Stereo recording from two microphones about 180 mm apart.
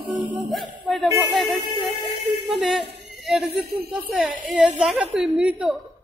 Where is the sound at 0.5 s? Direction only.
Centre (ahead or behind).